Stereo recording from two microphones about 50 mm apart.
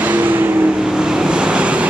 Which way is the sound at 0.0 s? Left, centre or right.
Right.